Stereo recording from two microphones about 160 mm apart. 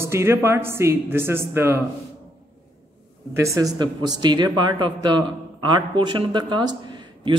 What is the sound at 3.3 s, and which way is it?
A man's voice, 20° right (ahead or behind).